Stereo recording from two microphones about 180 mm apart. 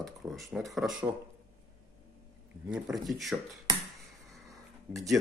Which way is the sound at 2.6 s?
5° right (ahead or behind).